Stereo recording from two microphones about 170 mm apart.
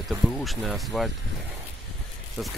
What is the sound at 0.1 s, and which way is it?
Speech, centre (ahead or behind).